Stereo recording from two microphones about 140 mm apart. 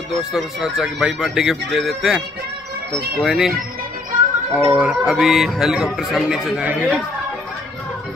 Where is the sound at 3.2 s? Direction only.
Centre (ahead or behind).